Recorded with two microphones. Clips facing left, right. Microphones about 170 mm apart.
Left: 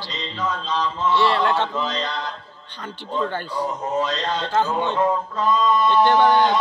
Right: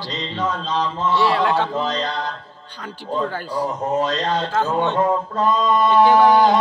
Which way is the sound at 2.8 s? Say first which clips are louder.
Right 2 dB; 5° right (ahead or behind).